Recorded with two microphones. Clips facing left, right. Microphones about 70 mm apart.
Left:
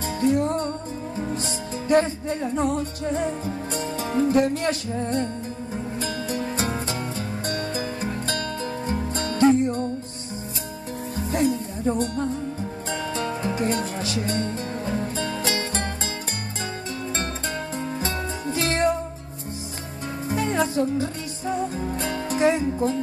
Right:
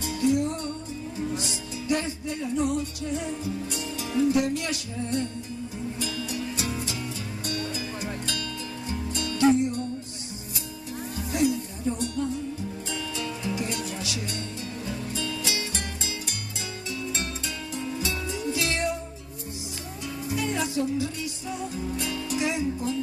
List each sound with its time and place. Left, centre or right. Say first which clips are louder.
0.0 s music: left 3 dB; left
11.1 s music: left 2 dB; left
17.7 s music: left 3 dB; left
20.2 s music: left 5 dB; left